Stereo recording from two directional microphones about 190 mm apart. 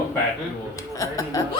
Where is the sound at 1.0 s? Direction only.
20° left (ahead or behind).